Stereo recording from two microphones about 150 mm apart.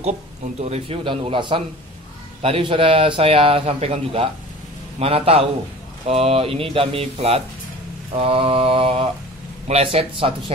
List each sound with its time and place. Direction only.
0.6 s a man's voice: 45° right (ahead or behind)